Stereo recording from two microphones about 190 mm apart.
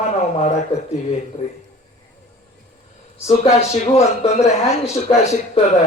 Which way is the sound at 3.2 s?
35° left (ahead or behind).